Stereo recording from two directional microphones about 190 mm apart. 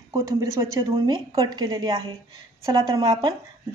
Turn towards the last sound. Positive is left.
turn(degrees=-20)  # may be behind; listen again after turning